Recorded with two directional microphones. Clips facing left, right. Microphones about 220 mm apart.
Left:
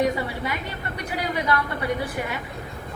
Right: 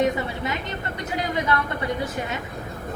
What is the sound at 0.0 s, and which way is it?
A woman's voice, 20° right (ahead or behind).